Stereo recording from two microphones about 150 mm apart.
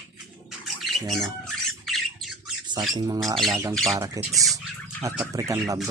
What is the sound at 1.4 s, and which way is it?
Squawk, centre (ahead or behind).